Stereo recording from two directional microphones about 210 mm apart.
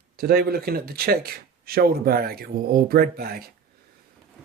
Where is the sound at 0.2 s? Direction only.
45° right (ahead or behind).